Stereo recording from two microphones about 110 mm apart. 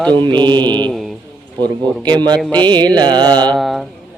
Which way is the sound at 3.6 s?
Centre (ahead or behind).